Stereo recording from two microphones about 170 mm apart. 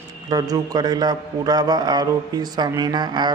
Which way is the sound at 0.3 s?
25° right (ahead or behind).